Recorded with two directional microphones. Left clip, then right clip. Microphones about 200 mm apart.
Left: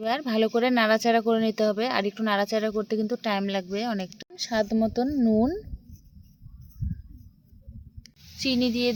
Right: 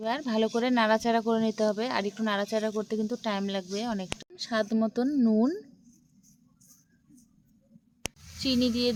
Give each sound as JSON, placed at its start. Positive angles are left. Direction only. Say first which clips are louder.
{"t": 0.0, "sound": "speech", "louder": "left 3 dB", "side_deg": 15}
{"t": 8.4, "sound": "speech", "louder": "left 2 dB", "side_deg": 15}